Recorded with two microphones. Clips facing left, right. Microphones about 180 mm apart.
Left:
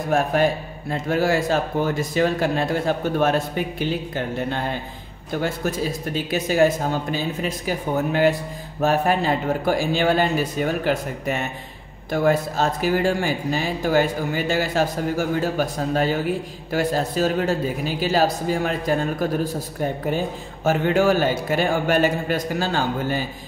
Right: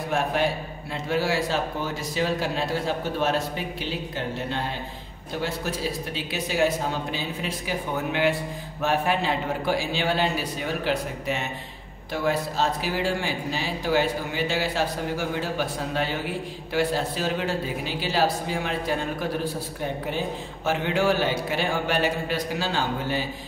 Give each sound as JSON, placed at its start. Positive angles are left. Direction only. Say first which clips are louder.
{"t": 0.1, "sound": "speech", "louder": "left 5 dB", "side_deg": 45}
{"t": 5.4, "sound": "speech", "louder": "left 4 dB", "side_deg": 45}
{"t": 20.6, "sound": "speech", "louder": "left 5 dB", "side_deg": 45}